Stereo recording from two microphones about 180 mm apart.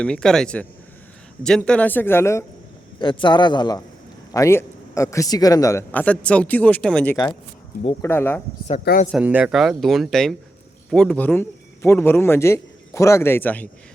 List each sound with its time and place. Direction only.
0.0 s a man's voice: 5° left (ahead or behind)
3.0 s a man's voice: 25° left (ahead or behind)
9.1 s a man's voice: 5° right (ahead or behind); by 13.7 s 10° left (ahead or behind)